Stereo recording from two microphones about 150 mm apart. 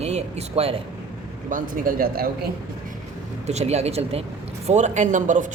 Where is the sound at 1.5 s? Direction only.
70° right (ahead or behind).